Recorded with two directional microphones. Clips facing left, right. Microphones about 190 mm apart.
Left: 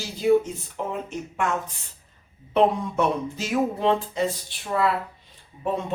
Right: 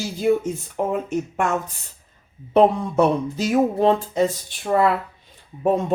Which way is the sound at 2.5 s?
35° right (ahead or behind).